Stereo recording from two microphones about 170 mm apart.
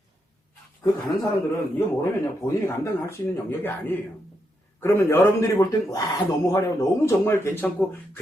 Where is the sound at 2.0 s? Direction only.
20° left (ahead or behind).